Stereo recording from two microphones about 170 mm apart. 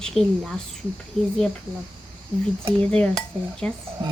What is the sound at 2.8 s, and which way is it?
Speech, 5° left (ahead or behind).